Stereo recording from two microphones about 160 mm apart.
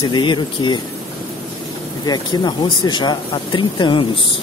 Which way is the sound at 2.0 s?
25° left (ahead or behind).